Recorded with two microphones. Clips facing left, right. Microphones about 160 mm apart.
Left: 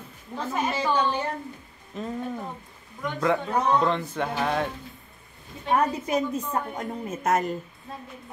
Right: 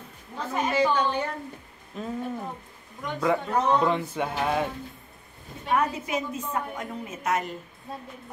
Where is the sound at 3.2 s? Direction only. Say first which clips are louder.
Even; 5° right (ahead or behind).